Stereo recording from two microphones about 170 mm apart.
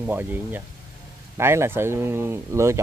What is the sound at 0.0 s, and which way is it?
Speech, 10° right (ahead or behind).